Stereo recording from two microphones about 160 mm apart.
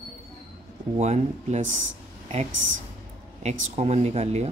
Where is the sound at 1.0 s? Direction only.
45° right (ahead or behind).